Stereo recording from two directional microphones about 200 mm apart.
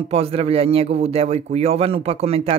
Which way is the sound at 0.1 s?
30° right (ahead or behind).